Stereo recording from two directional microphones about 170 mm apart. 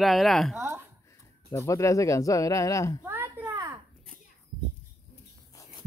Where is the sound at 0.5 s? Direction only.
15° right (ahead or behind).